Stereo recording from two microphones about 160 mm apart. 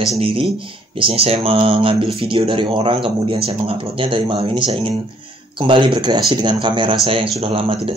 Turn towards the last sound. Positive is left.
turn(degrees=-35)  # may be behind; listen again after turning